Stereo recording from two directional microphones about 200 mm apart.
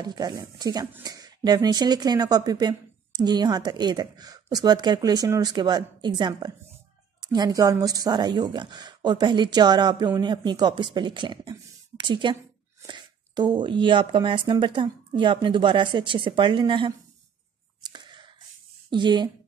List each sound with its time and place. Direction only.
0.0 s speech: 20° right (ahead or behind)
17.8 s a sound: 20° right (ahead or behind)
18.9 s speech: 25° right (ahead or behind)